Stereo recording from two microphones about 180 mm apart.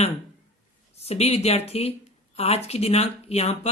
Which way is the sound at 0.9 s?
35° left (ahead or behind).